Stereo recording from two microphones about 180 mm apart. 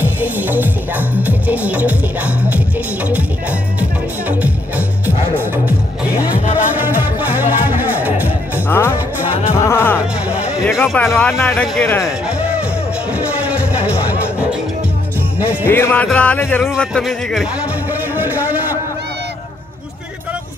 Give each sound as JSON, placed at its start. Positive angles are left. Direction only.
{"t": 0.0, "sound": "music", "side_deg": -10}
{"t": 4.3, "sound": "music", "side_deg": -10}
{"t": 6.3, "sound": "music", "side_deg": 40}
{"t": 6.8, "sound": "music", "side_deg": -10}
{"t": 8.6, "sound": "music", "side_deg": 15}
{"t": 10.9, "sound": "speech", "side_deg": 5}
{"t": 15.6, "sound": "speech", "side_deg": 10}
{"t": 18.1, "sound": "a sound", "side_deg": -10}